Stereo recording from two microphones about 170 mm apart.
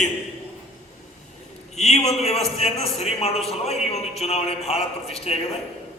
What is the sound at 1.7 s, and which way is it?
A man's voice, 40° left (ahead or behind).